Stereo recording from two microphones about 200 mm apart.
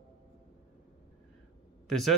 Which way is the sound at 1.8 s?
Centre (ahead or behind).